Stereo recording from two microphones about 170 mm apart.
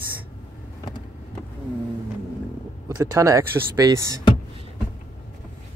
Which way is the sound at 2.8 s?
15° right (ahead or behind).